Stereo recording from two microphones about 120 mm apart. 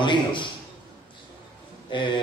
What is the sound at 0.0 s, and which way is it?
Speech, 40° left (ahead or behind).